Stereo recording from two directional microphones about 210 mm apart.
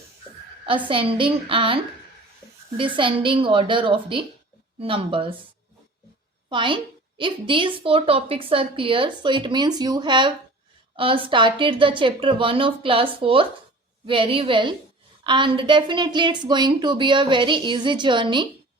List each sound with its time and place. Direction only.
0.9 s a woman's voice: 25° right (ahead or behind)
6.5 s a woman's voice: 25° right (ahead or behind)